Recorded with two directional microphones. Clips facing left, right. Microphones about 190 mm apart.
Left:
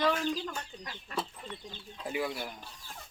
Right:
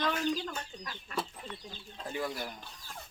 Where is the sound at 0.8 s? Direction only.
20° left (ahead or behind).